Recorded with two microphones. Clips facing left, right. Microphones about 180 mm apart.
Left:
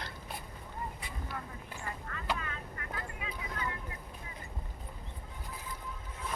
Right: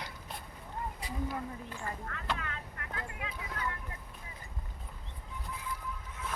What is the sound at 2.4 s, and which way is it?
Vehicle, 70° right (ahead or behind).